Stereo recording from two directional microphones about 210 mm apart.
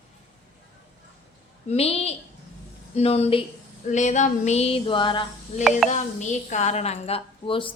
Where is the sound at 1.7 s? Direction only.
30° left (ahead or behind).